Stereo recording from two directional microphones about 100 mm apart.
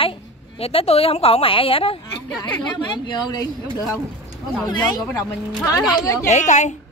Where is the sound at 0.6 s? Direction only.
80° left.